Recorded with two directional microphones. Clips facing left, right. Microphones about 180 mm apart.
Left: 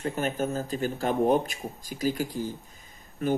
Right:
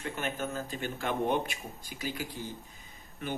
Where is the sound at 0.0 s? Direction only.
40° left (ahead or behind).